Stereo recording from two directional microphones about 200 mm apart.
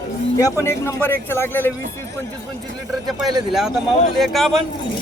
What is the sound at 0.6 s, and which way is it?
A man's voice, 15° left (ahead or behind).